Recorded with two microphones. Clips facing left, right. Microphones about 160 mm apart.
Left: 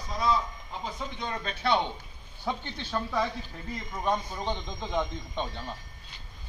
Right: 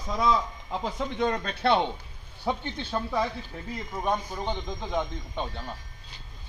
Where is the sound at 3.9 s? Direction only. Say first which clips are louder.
Right 1 dB; 5° right (ahead or behind).